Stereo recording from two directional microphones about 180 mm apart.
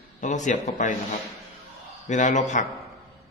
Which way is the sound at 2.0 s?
45° left (ahead or behind).